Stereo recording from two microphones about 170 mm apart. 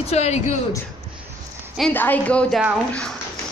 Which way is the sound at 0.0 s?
40° left (ahead or behind).